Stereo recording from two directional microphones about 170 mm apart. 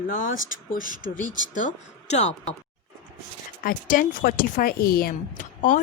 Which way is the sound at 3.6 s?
55° left (ahead or behind).